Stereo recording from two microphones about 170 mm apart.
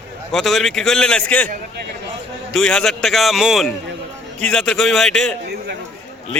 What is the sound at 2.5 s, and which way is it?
A man's voice, 5° left (ahead or behind).